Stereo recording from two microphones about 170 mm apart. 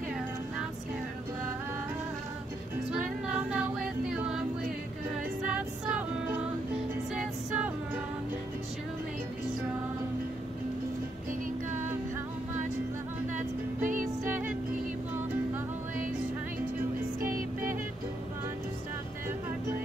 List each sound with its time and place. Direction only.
2.9 s music: 5° right (ahead or behind)
17.2 s music: 55° right (ahead or behind)